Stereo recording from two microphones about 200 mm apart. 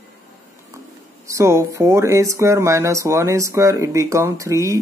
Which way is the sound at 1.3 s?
15° right (ahead or behind).